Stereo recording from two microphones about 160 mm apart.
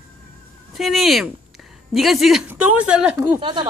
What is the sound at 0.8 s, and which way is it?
A man's voice, centre (ahead or behind).